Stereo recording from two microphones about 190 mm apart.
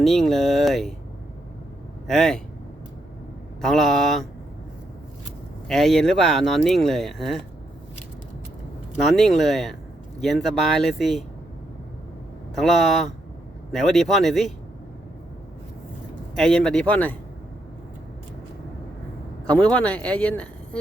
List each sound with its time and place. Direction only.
0.0 s speech: centre (ahead or behind)
2.0 s speech: centre (ahead or behind)
3.6 s speech: centre (ahead or behind)
5.6 s speech: centre (ahead or behind)
9.0 s speech: centre (ahead or behind)
12.5 s speech: centre (ahead or behind)
16.3 s speech: 5° left (ahead or behind)
19.5 s speech: 5° left (ahead or behind)